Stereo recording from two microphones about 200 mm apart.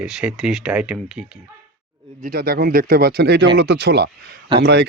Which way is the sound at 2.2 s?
50° right (ahead or behind).